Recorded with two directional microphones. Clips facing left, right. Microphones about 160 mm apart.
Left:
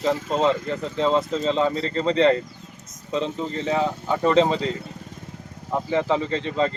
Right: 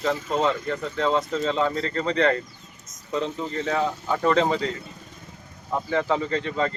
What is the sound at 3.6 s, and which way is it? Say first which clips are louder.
Speech: left 2 dB; 30° left (ahead or behind).